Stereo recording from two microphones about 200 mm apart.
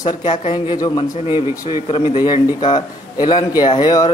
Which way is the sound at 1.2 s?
15° right (ahead or behind).